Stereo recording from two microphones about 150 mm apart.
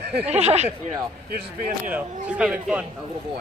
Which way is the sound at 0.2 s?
45° right (ahead or behind).